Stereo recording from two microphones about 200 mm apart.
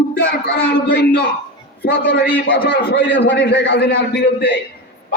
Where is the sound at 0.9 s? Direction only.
55° left (ahead or behind).